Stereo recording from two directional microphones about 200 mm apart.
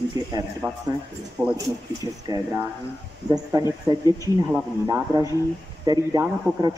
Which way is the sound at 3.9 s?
20° right (ahead or behind).